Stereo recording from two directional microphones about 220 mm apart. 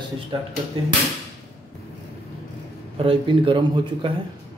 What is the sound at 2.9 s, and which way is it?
A man's voice, 25° right (ahead or behind).